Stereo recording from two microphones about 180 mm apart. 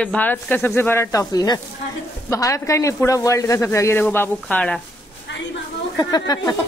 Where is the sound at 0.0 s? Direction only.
10° left (ahead or behind).